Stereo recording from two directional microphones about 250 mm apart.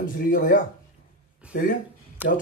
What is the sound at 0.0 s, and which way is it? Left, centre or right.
Speech, left.